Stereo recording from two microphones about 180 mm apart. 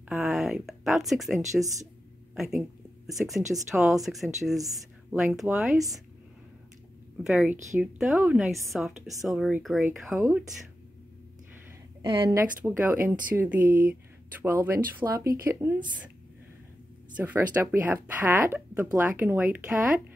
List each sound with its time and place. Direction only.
0.1 s a woman's voice: centre (ahead or behind)
7.2 s a woman's voice: centre (ahead or behind)
12.0 s a woman's voice: 30° right (ahead or behind)
12.4 s speech: 10° right (ahead or behind)
17.2 s speech: 10° right (ahead or behind)